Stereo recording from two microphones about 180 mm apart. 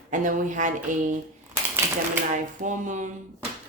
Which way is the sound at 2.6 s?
45° right (ahead or behind).